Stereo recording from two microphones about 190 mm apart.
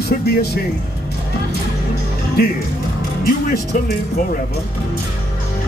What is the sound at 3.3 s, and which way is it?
Speech, 50° left (ahead or behind).